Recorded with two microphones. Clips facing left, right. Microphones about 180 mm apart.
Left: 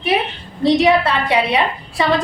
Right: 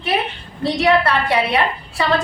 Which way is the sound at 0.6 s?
15° left (ahead or behind).